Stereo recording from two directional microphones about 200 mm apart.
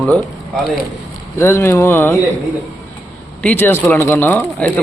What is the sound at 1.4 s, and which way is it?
Speech, 10° left (ahead or behind).